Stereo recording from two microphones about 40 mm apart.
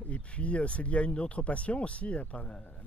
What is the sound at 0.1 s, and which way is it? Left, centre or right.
Speech, left.